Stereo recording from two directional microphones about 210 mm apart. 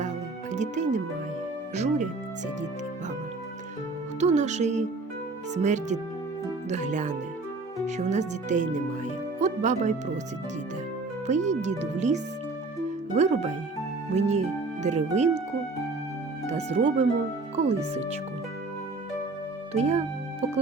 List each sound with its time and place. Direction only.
0.5 s speech: 35° right (ahead or behind)
4.2 s speech: 35° right (ahead or behind)
11.3 s speech: 35° right (ahead or behind)
16.5 s speech: 30° right (ahead or behind)
19.7 s speech: 30° right (ahead or behind)